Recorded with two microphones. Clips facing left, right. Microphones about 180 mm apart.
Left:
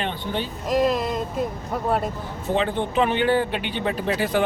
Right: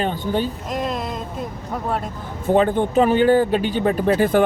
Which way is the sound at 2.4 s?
50° right (ahead or behind).